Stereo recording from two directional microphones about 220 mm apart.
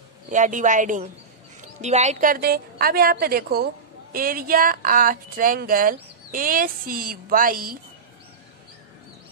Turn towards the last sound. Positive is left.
turn(degrees=-40)  # may be behind; listen again after turning